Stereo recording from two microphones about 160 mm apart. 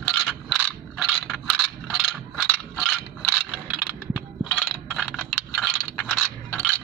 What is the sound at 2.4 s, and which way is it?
Mechanisms, 5° left (ahead or behind).